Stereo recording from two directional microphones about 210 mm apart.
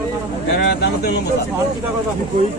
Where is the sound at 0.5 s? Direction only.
55° left (ahead or behind).